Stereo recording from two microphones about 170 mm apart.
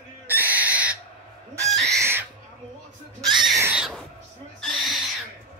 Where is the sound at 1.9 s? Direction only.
15° right (ahead or behind).